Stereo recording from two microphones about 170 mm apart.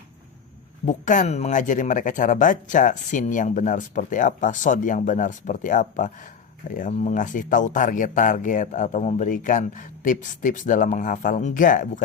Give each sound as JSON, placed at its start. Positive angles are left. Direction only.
{"t": 0.9, "sound": "speech", "side_deg": 45}